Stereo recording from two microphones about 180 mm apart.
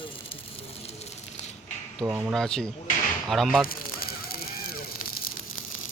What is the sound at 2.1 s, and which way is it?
Speech, 10° right (ahead or behind).